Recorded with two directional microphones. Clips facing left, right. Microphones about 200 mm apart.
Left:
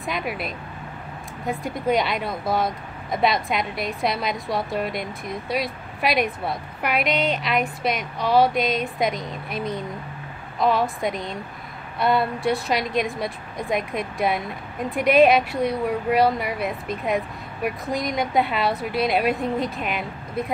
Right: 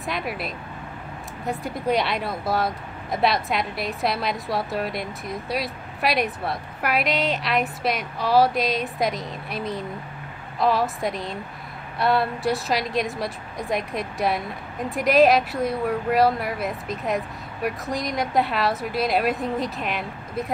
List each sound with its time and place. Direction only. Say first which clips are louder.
0.0 s speech: left 1 dB; centre (ahead or behind)